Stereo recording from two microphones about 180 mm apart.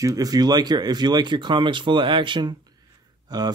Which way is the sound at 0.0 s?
20° right (ahead or behind).